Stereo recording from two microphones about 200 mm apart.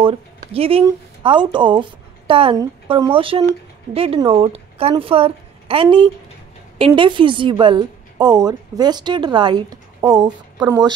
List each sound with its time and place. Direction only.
0.0 s a woman's voice: 30° right (ahead or behind)